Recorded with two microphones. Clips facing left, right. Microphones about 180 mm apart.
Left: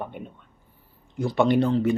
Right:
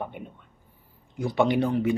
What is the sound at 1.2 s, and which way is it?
Speech, 15° right (ahead or behind).